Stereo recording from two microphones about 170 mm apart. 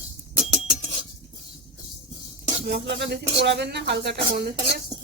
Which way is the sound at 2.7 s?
75° right (ahead or behind).